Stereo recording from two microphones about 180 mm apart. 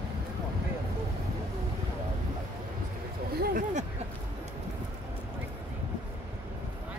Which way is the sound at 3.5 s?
40° right (ahead or behind).